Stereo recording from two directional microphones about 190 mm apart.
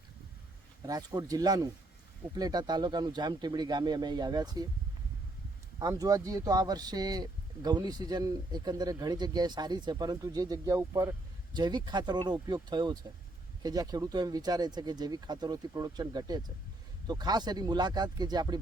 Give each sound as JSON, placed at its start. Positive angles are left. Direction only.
{"t": 0.9, "sound": "speech", "side_deg": -20}
{"t": 5.8, "sound": "speech", "side_deg": -20}